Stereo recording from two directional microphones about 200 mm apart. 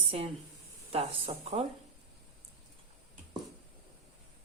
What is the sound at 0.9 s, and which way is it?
Speech, 30° right (ahead or behind).